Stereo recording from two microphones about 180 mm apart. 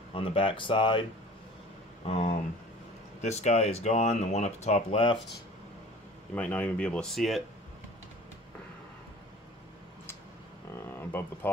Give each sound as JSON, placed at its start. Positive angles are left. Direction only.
{"t": 0.1, "sound": "speech", "side_deg": 30}
{"t": 2.0, "sound": "speech", "side_deg": 35}
{"t": 6.3, "sound": "speech", "side_deg": 10}
{"t": 10.7, "sound": "speech", "side_deg": 10}